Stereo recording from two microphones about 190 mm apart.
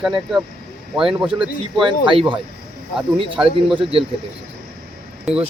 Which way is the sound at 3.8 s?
30° right (ahead or behind).